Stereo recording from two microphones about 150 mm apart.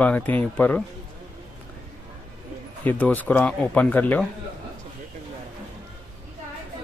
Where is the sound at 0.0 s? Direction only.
10° left (ahead or behind).